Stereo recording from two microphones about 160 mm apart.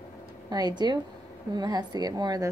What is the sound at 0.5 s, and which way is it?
A woman's voice, 25° right (ahead or behind).